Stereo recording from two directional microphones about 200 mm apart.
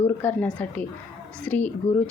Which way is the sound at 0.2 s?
10° left (ahead or behind).